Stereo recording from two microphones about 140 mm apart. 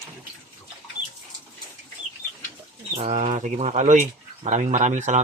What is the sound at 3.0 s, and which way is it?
Speech, 50° right (ahead or behind).